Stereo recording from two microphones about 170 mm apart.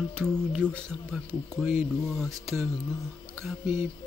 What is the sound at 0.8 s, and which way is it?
Speech, centre (ahead or behind).